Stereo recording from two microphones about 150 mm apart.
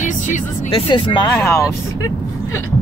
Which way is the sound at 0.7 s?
35° left (ahead or behind).